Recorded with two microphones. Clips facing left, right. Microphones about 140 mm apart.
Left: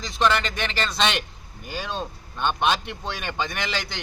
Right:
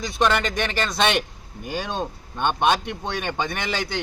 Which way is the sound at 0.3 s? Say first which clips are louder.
Right 1 dB; 50° right (ahead or behind).